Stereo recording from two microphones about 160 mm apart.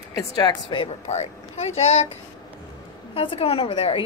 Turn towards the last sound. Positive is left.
turn(degrees=35)  # may be behind; listen again after turning